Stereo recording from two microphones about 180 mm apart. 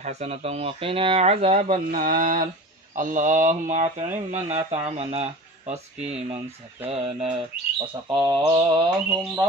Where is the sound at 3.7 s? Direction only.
40° right (ahead or behind).